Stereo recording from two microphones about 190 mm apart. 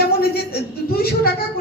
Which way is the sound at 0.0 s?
55° left (ahead or behind).